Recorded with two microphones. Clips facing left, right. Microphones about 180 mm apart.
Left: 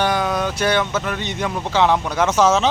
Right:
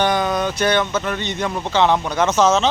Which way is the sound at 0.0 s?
5° left (ahead or behind).